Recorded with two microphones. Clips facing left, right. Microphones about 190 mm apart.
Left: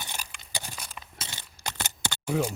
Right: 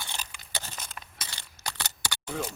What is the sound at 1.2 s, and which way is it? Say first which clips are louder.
Keys jangling: left 2 dB; 20° left (ahead or behind).